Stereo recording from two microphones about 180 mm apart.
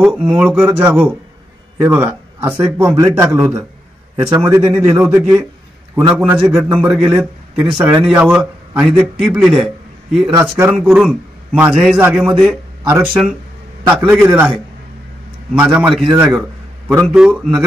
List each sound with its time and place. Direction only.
0.0 s a man's voice: 10° right (ahead or behind)
15.5 s a man's voice: 10° right (ahead or behind)